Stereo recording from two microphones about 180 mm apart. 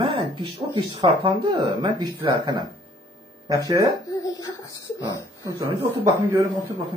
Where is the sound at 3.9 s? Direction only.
20° left (ahead or behind).